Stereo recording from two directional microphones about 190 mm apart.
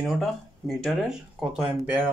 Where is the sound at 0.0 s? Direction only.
Centre (ahead or behind).